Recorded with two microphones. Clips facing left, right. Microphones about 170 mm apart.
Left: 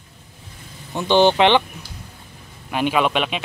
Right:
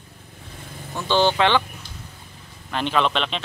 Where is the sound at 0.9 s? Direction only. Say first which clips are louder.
Left 4 dB; 20° left (ahead or behind).